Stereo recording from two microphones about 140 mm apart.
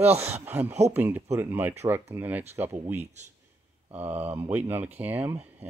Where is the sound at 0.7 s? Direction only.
55° right (ahead or behind).